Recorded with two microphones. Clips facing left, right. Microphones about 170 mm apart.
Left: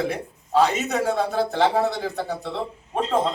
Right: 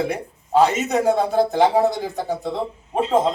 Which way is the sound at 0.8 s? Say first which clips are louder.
Right 4 dB; 15° right (ahead or behind).